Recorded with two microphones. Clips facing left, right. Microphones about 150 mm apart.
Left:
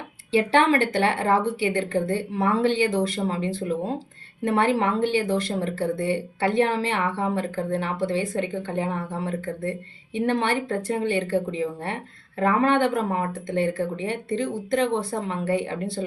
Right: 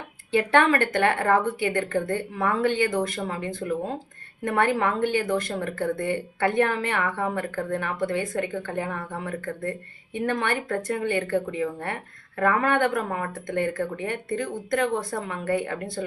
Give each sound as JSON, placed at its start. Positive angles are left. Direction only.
{"t": 0.8, "sound": "speech", "side_deg": 20}